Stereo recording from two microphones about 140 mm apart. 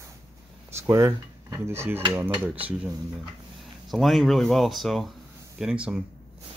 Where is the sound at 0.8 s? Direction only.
20° right (ahead or behind).